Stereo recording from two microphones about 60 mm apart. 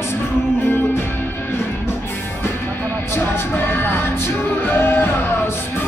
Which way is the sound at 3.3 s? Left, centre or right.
Left.